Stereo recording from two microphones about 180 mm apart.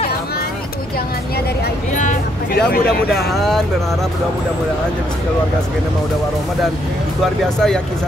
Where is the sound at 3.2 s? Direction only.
Centre (ahead or behind).